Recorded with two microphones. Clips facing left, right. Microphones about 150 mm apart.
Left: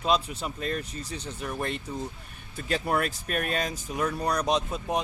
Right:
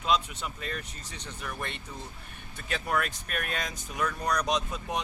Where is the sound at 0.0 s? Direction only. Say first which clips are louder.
Left 2 dB; 35° left (ahead or behind).